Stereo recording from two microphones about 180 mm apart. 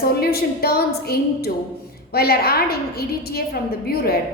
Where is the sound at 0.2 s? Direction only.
60° left (ahead or behind).